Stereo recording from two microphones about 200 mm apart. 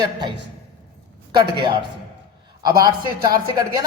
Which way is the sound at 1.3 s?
25° right (ahead or behind).